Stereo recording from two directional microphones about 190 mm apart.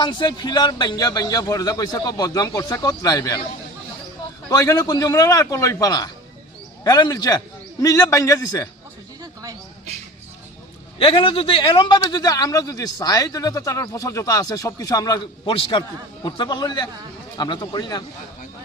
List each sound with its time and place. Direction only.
0.0 s a man's voice: 25° left (ahead or behind)
4.4 s a man's voice: 20° left (ahead or behind)
9.2 s a sound: 20° right (ahead or behind)
10.9 s a man's voice: 30° left (ahead or behind)
15.5 s a man's voice: 30° left (ahead or behind)